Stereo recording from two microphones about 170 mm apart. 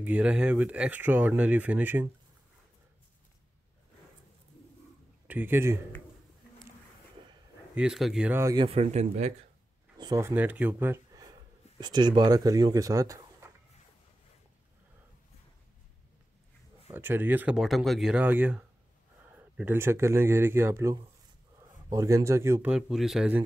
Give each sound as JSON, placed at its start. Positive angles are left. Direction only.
{"t": 0.0, "sound": "speech", "side_deg": -10}
{"t": 5.3, "sound": "speech", "side_deg": -10}
{"t": 7.7, "sound": "speech", "side_deg": -5}
{"t": 8.5, "sound": "speech", "side_deg": -35}
{"t": 9.9, "sound": "speech", "side_deg": -20}
{"t": 16.9, "sound": "speech", "side_deg": -10}